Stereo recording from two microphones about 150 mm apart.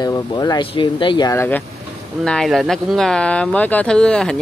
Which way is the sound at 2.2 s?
5° left (ahead or behind).